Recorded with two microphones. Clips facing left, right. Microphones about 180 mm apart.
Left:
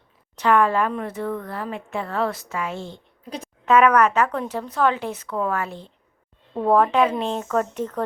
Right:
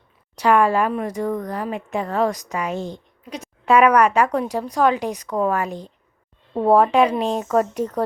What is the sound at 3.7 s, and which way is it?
Speech, 10° right (ahead or behind).